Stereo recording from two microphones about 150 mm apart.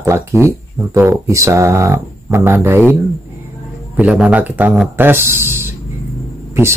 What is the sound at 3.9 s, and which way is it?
Speech, 10° right (ahead or behind).